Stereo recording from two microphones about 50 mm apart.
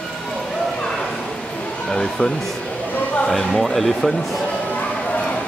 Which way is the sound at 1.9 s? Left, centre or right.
Centre.